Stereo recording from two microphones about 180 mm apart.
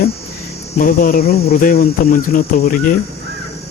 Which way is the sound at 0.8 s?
50° left (ahead or behind).